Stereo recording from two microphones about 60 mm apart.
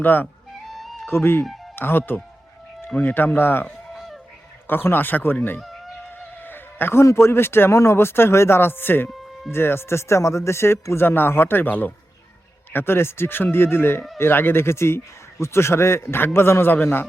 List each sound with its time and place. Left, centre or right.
0.0 s speech: left
0.6 s music: centre
1.0 s a man's voice: left
3.9 s a sound: centre
4.6 s speech: left
5.5 s fowl: centre
6.1 s music: left
7.0 s a man's voice: left